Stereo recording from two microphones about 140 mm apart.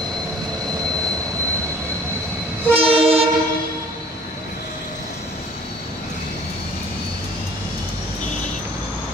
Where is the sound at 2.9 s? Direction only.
45° right (ahead or behind).